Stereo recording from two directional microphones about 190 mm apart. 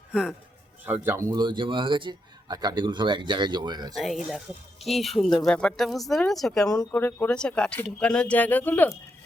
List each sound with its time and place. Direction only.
0.1 s a man's voice: 5° right (ahead or behind)
1.0 s a man's voice: 15° right (ahead or behind)
3.9 s speech: centre (ahead or behind)
6.7 s speech: 15° left (ahead or behind)